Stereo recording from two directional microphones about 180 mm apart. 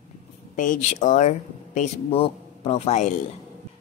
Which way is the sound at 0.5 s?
45° left (ahead or behind).